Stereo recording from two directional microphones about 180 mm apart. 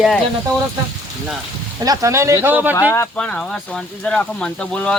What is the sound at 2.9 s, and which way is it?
Speech, 10° left (ahead or behind).